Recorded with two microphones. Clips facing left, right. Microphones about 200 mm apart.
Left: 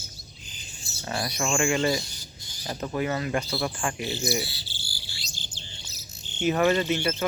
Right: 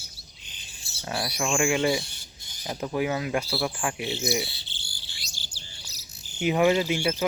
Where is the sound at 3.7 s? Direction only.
5° right (ahead or behind).